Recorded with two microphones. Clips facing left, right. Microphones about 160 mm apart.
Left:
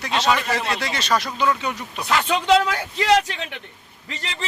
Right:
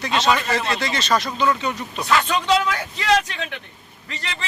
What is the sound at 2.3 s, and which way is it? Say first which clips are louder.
A man's voice: left 2 dB; 20° left (ahead or behind).